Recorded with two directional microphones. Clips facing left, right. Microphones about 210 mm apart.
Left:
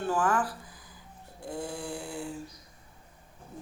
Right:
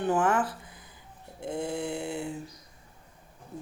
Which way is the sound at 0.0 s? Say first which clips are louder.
Right 2 dB; 20° right (ahead or behind).